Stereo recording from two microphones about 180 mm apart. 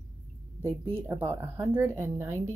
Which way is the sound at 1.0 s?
15° right (ahead or behind).